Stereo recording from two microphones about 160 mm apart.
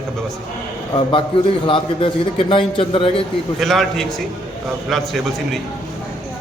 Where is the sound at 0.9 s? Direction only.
30° left (ahead or behind).